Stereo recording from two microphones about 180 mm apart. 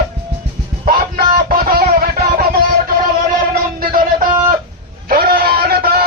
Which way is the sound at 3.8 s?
55° right (ahead or behind).